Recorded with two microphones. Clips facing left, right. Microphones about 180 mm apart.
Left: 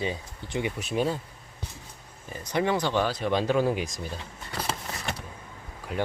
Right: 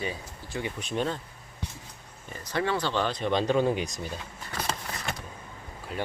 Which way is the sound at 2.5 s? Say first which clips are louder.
Left 3 dB; 15° left (ahead or behind).